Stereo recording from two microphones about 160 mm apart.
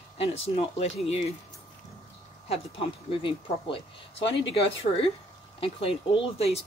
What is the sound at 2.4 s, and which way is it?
Speech, 35° left (ahead or behind).